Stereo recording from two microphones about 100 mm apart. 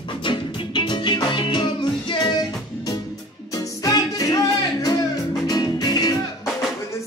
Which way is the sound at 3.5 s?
35° left (ahead or behind).